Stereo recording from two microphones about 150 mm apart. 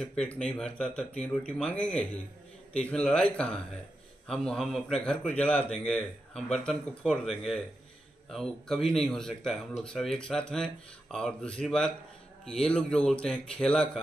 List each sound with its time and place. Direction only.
0.0 s speech: 5° left (ahead or behind)